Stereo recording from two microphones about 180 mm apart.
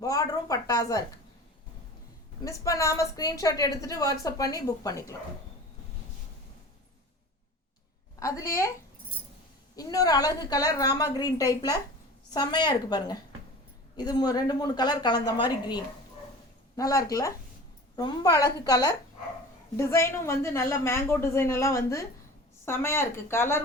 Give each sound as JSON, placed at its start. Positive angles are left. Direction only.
{"t": 0.0, "sound": "speech", "side_deg": 20}
{"t": 2.4, "sound": "a woman's voice", "side_deg": 15}
{"t": 8.2, "sound": "a woman's voice", "side_deg": 15}
{"t": 9.7, "sound": "a woman's voice", "side_deg": 20}